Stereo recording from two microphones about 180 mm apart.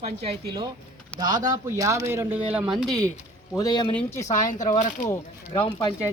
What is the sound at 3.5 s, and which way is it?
Speech, 20° left (ahead or behind).